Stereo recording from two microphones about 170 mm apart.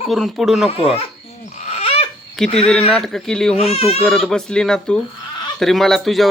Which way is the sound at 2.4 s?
Centre (ahead or behind).